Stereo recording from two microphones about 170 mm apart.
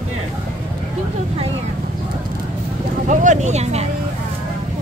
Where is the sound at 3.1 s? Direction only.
45° right (ahead or behind).